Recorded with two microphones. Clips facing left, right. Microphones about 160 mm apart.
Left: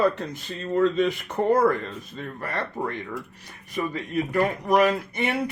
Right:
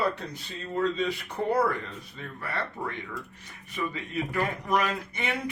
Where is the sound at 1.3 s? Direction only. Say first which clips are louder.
Left 6 dB; 45° left (ahead or behind).